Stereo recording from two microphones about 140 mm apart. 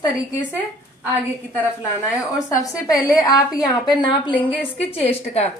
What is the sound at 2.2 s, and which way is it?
A woman's voice, 25° left (ahead or behind).